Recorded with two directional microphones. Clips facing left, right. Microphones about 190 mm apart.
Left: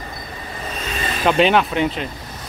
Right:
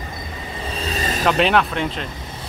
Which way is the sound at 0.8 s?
40° right (ahead or behind).